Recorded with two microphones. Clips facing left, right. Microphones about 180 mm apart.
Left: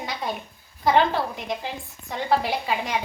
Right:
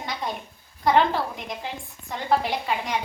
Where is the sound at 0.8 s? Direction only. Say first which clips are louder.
Even; centre (ahead or behind).